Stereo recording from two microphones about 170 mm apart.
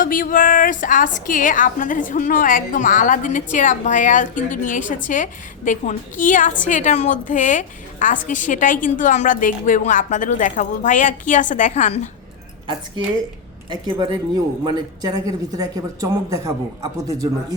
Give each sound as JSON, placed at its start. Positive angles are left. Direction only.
{"t": 0.0, "sound": "a woman's voice", "side_deg": 55}
{"t": 14.6, "sound": "speech", "side_deg": -20}